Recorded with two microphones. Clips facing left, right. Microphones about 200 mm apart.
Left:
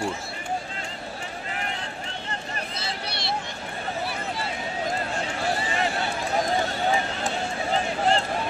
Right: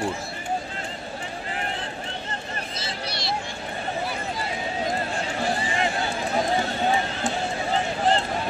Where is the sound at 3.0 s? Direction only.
60° left (ahead or behind).